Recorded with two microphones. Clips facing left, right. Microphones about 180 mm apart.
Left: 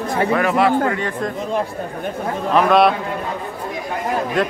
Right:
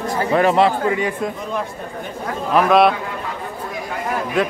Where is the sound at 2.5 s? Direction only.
Centre (ahead or behind).